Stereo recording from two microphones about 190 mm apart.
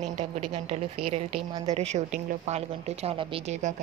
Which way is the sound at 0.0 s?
35° right (ahead or behind).